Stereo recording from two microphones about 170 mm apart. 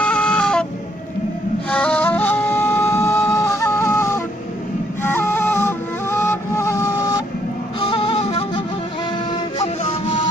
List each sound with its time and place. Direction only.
0.0 s a sound: 5° left (ahead or behind)
1.7 s flute: 10° left (ahead or behind)
5.0 s music: 15° left (ahead or behind)
7.9 s music: 35° left (ahead or behind)